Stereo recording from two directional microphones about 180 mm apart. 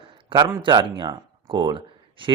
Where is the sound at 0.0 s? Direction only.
30° right (ahead or behind).